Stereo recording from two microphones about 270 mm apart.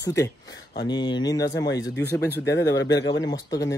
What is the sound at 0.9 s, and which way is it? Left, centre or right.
Speech, centre.